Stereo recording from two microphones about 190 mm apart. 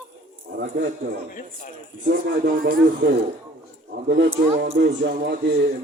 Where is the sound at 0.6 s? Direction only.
65° right (ahead or behind).